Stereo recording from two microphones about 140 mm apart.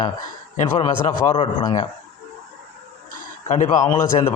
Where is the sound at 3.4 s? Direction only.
60° left (ahead or behind).